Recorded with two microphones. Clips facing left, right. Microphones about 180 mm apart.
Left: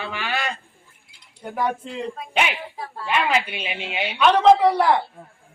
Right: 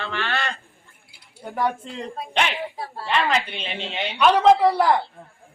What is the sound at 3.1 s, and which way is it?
Speech, 10° left (ahead or behind).